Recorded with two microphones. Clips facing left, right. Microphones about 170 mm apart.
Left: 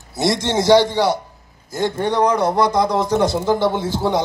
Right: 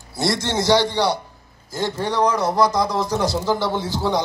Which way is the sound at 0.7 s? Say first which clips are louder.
Left 4 dB; 50° left (ahead or behind).